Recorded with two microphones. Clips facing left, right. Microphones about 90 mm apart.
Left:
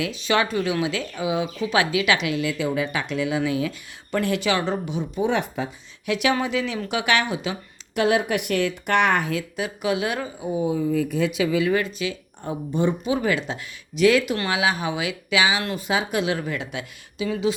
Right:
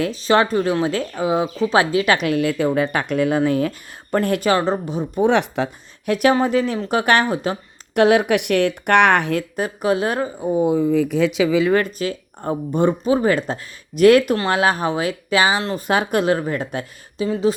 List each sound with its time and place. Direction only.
0.0 s speech: 40° right (ahead or behind)
5.2 s speech: 70° right (ahead or behind)
6.1 s speech: 45° right (ahead or behind)
7.9 s a woman's voice: 60° right (ahead or behind)
9.6 s speech: 40° right (ahead or behind); by 11.7 s 75° right (ahead or behind)
11.7 s speech: 50° right (ahead or behind)
13.1 s speech: 35° right (ahead or behind)
15.9 s a woman's voice: 55° right (ahead or behind); by 17.5 s 35° right (ahead or behind)